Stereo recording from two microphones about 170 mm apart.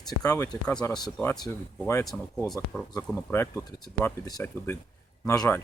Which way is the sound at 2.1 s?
5° left (ahead or behind).